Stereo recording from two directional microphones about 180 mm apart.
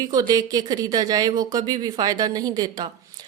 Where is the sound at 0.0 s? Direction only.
20° right (ahead or behind).